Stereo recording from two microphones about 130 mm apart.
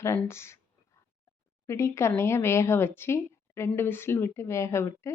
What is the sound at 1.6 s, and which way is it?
Speech, 20° left (ahead or behind).